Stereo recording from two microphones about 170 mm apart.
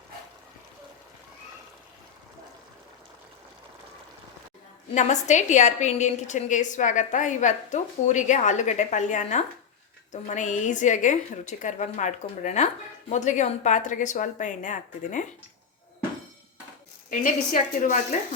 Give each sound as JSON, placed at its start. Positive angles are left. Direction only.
{"t": 4.9, "sound": "a woman's voice", "side_deg": 45}
{"t": 17.1, "sound": "a woman's voice", "side_deg": 50}